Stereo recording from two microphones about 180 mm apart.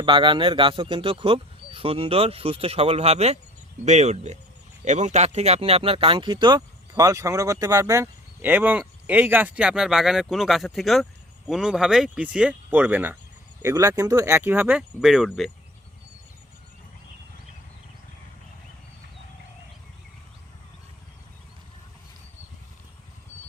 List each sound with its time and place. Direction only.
0.0 s speech: 25° right (ahead or behind); by 15.5 s 5° right (ahead or behind)